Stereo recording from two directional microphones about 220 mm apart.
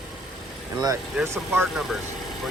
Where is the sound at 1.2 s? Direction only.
5° right (ahead or behind).